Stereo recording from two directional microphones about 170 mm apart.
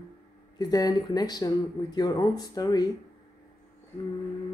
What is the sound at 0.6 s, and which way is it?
Speech, 25° left (ahead or behind).